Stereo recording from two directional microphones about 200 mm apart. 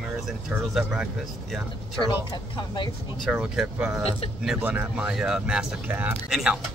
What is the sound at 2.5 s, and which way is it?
Speech, 25° left (ahead or behind).